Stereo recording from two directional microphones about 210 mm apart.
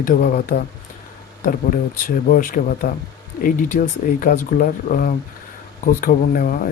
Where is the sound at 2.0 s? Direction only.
40° left (ahead or behind).